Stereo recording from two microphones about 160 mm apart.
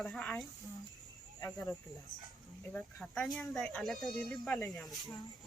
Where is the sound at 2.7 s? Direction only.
5° left (ahead or behind).